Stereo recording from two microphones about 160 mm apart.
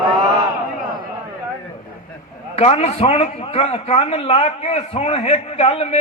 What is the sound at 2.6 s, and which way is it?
A man's voice, 40° left (ahead or behind).